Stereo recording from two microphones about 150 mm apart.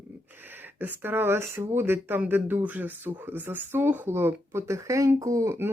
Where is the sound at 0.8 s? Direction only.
15° right (ahead or behind).